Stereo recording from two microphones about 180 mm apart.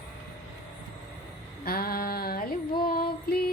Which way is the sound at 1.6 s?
55° left (ahead or behind).